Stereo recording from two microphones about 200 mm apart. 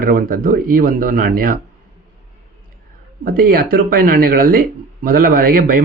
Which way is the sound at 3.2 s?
45° right (ahead or behind).